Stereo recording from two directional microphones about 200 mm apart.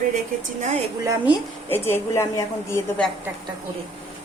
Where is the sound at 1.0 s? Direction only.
15° right (ahead or behind).